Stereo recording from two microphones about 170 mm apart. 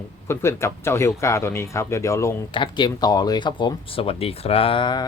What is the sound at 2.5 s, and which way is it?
Speech, 25° left (ahead or behind).